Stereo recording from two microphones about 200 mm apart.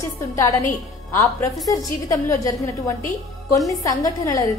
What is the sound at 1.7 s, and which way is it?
A woman's voice, 15° left (ahead or behind).